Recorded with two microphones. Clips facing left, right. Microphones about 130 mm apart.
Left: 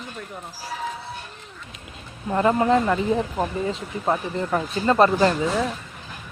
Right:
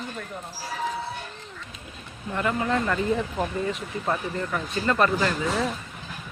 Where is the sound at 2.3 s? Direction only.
35° left (ahead or behind).